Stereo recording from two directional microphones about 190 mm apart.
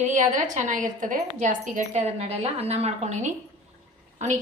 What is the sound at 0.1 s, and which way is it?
A woman's voice, 40° right (ahead or behind).